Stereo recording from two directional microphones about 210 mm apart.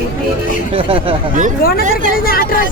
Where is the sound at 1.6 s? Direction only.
45° left (ahead or behind).